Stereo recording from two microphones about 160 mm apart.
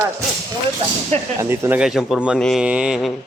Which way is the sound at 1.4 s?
15° right (ahead or behind).